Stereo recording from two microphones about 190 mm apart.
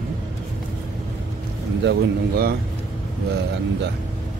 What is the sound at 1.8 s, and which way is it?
Speech, 55° right (ahead or behind).